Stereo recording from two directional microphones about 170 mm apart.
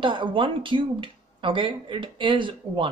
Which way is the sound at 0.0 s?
30° right (ahead or behind).